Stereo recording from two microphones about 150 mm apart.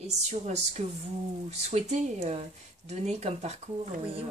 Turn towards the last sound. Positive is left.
turn(degrees=-45)  # may be behind; listen again after turning